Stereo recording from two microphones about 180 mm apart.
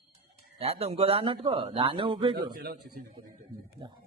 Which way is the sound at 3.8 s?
25° right (ahead or behind).